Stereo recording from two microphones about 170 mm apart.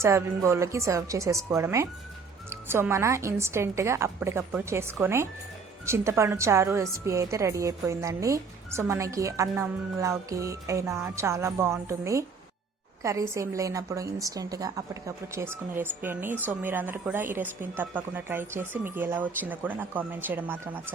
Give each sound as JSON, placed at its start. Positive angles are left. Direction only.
{"t": 0.0, "sound": "a woman's voice", "side_deg": -15}